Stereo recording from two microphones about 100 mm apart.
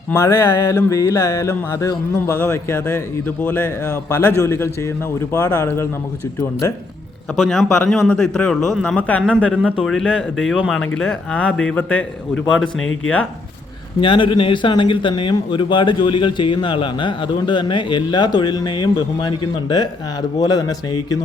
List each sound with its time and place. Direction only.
0.1 s speech: 30° left (ahead or behind)
7.3 s speech: centre (ahead or behind)
14.0 s speech: 60° left (ahead or behind); by 21.2 s 40° left (ahead or behind)